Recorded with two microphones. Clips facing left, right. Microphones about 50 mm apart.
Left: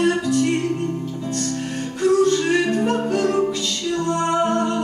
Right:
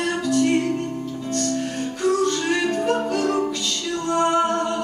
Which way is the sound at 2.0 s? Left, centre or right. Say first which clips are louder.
Left 4 dB; left.